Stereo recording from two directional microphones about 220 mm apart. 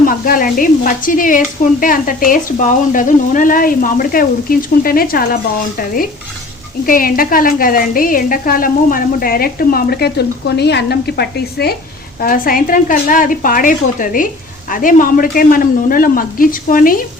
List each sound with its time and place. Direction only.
0.0 s a woman's voice: 40° left (ahead or behind)